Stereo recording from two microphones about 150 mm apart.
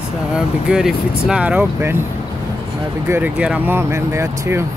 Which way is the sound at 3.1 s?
10° right (ahead or behind).